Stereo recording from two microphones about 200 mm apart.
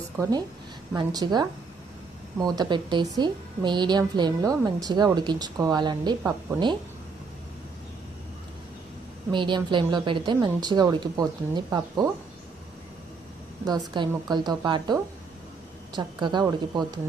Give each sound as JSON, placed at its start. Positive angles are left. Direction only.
{"t": 0.2, "sound": "a woman's voice", "side_deg": -20}
{"t": 9.3, "sound": "a woman's voice", "side_deg": -25}
{"t": 13.7, "sound": "a woman's voice", "side_deg": -20}